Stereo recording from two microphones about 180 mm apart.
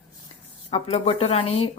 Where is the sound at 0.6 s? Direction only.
35° left (ahead or behind).